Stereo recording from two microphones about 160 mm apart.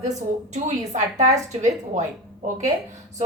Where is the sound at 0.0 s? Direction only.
45° right (ahead or behind).